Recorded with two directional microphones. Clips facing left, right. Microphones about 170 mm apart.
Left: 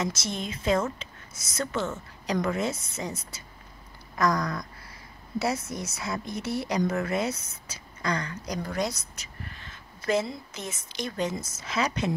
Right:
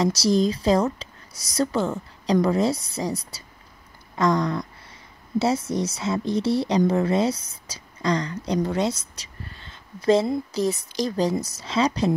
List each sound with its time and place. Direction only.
0.0 s speech: 35° right (ahead or behind)